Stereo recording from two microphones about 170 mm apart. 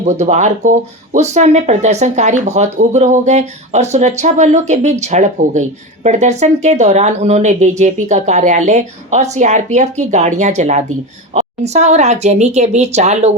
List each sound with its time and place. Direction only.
0.0 s a woman's voice: 45° right (ahead or behind)